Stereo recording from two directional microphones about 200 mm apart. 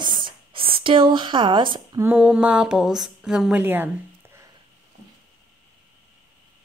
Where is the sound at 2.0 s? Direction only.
5° right (ahead or behind).